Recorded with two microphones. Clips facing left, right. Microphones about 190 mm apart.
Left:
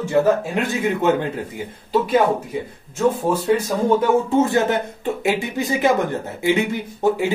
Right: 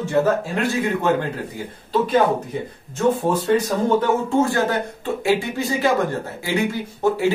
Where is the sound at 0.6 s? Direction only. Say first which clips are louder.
Even; 20° left (ahead or behind).